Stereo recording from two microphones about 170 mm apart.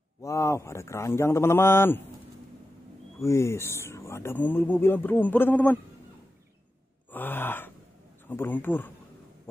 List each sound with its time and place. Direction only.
0.2 s speech: 20° left (ahead or behind)
3.2 s speech: 15° left (ahead or behind)
7.1 s groan: 10° left (ahead or behind)
8.3 s speech: 10° left (ahead or behind)